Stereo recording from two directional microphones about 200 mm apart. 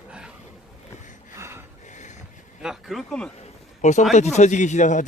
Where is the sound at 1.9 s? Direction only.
35° left (ahead or behind).